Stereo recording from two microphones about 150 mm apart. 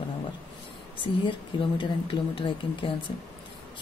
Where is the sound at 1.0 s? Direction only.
35° left (ahead or behind).